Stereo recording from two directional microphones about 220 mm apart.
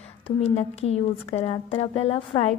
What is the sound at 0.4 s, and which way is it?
A woman's voice, 30° left (ahead or behind).